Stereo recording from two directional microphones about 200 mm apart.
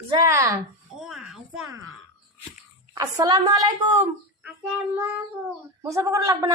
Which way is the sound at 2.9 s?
20° right (ahead or behind).